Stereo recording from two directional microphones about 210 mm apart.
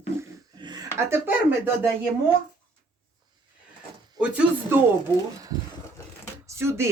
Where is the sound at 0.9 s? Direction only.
10° right (ahead or behind).